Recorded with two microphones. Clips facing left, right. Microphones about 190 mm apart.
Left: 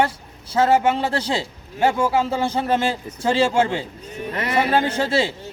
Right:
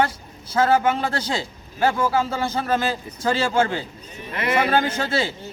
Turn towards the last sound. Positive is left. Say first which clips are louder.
# left 3 dB
turn(degrees=25)  # may be behind; listen again after turning